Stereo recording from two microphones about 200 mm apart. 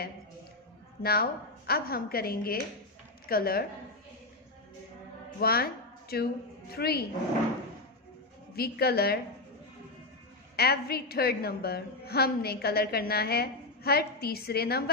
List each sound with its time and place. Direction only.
1.0 s a woman's voice: 50° left (ahead or behind)
5.4 s a woman's voice: 50° left (ahead or behind)
8.5 s a woman's voice: 50° left (ahead or behind)
10.5 s a woman's voice: 50° left (ahead or behind)